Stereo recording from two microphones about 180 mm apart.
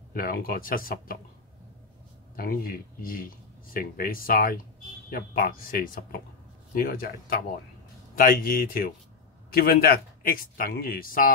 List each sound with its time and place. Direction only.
0.1 s speech: 55° left (ahead or behind)
2.3 s a man's voice: 55° left (ahead or behind)